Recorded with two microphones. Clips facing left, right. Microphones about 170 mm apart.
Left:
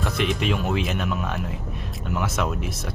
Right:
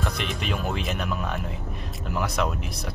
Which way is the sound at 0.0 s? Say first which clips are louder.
Left 5 dB; centre (ahead or behind).